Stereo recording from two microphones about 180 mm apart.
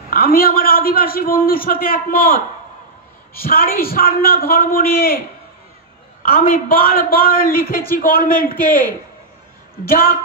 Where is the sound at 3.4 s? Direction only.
55° left (ahead or behind).